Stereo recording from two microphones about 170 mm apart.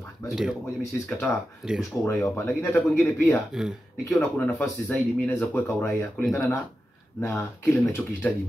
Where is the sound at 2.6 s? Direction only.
Centre (ahead or behind).